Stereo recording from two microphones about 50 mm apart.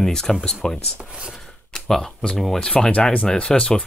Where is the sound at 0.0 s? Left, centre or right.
Centre.